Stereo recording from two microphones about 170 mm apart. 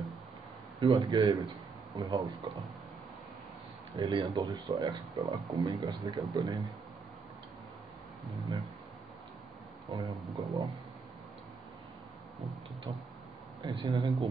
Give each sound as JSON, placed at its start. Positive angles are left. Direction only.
{"t": 0.7, "sound": "speech", "side_deg": -30}
{"t": 3.9, "sound": "speech", "side_deg": -30}
{"t": 8.3, "sound": "speech", "side_deg": -20}
{"t": 9.8, "sound": "speech", "side_deg": -25}
{"t": 13.7, "sound": "speech", "side_deg": -25}